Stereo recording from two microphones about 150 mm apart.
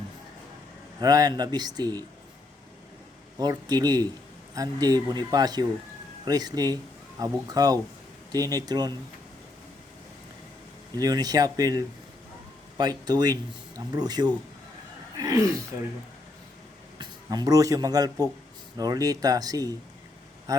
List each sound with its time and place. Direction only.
0.9 s speech: 25° right (ahead or behind)
3.3 s speech: 25° right (ahead or behind)
10.9 s speech: 25° right (ahead or behind)
13.1 s speech: 25° right (ahead or behind)
17.0 s a man's voice: 25° right (ahead or behind)